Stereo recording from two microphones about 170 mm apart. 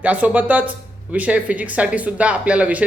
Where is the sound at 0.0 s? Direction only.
10° right (ahead or behind).